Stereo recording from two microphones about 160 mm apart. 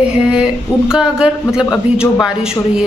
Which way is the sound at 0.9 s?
5° right (ahead or behind).